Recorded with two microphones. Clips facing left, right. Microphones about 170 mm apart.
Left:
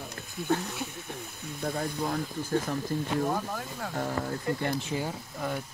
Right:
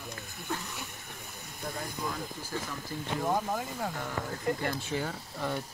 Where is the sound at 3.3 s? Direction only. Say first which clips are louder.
Right 2 dB; 15° right (ahead or behind).